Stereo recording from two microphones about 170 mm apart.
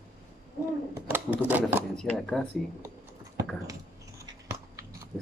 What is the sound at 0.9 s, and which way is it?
Typewriter, 10° right (ahead or behind).